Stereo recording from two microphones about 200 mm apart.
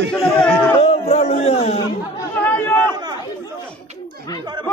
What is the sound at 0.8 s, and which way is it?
A man's voice, 30° left (ahead or behind).